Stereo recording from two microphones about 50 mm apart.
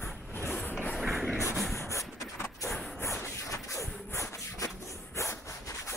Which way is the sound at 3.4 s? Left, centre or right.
Left.